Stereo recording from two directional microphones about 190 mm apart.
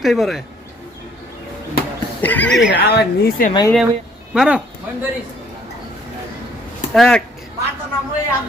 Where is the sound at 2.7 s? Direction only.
55° left (ahead or behind).